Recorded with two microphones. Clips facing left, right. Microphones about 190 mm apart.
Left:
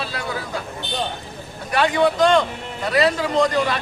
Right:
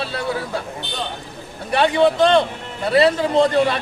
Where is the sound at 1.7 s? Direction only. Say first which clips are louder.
Right 2 dB; 25° right (ahead or behind).